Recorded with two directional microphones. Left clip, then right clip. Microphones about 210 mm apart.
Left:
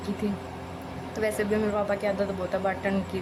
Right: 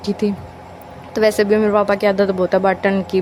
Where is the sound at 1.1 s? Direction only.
40° right (ahead or behind).